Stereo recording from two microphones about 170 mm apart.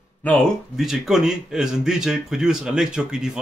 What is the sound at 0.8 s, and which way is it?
Speech, centre (ahead or behind).